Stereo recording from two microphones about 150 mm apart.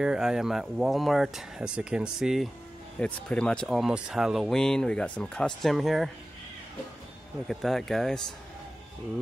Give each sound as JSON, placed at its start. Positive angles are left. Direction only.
{"t": 0.0, "sound": "speech", "side_deg": -5}
{"t": 7.4, "sound": "speech", "side_deg": 0}